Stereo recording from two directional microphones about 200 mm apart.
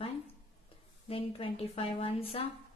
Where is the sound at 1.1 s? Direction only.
25° left (ahead or behind).